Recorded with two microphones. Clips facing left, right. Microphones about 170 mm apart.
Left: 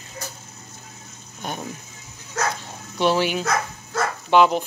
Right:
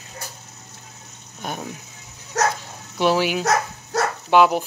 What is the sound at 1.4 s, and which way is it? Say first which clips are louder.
Speech: right 1 dB; 5° right (ahead or behind).